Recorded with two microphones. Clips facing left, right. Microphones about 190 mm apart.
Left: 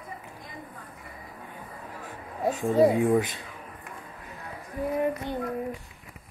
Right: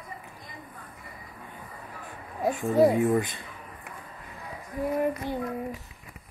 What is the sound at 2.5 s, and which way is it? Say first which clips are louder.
Speech: left 2 dB; 20° left (ahead or behind).